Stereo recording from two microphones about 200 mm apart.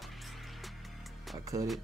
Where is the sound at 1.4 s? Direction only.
15° right (ahead or behind).